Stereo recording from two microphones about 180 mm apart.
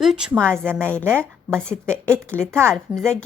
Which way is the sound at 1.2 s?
5° left (ahead or behind).